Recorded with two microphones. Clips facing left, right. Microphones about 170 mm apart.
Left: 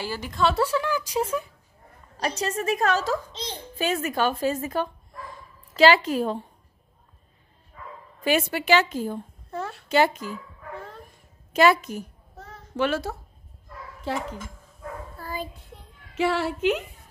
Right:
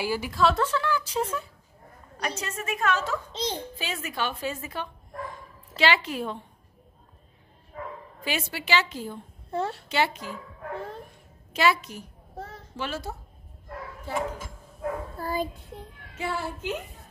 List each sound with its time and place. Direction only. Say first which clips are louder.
0.0 s a woman's voice: right 1 dB; 10° right (ahead or behind)
0.6 s speech: left 2 dB; 10° left (ahead or behind)
2.1 s a woman's voice: left 5 dB; 35° left (ahead or behind)
3.7 s a woman's voice: left 8 dB; 45° left (ahead or behind)
8.2 s a woman's voice: left 8 dB; 50° left (ahead or behind)
9.5 s a child's voice: right 4 dB; 25° right (ahead or behind)
9.8 s a woman's voice: left 5 dB; 45° left (ahead or behind)
11.5 s a woman's voice: left 5 dB; 50° left (ahead or behind)
12.7 s a child's voice: left 8 dB; 65° left (ahead or behind)
14.1 s a woman's voice: left 2 dB; 80° left
15.1 s child singing: right 3 dB; 40° right (ahead or behind)
16.2 s a woman's voice: left 8 dB; 80° left